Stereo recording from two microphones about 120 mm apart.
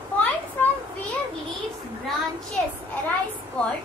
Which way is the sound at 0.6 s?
15° left (ahead or behind).